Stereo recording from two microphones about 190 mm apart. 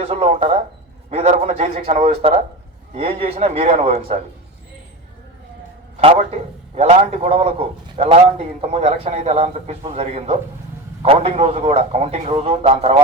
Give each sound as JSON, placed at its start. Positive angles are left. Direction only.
{"t": 0.0, "sound": "a man's voice", "side_deg": -35}
{"t": 6.0, "sound": "a man's voice", "side_deg": -35}